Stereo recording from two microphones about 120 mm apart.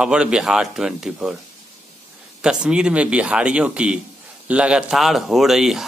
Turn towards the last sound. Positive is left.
turn(degrees=-5)  # may be behind; listen again after turning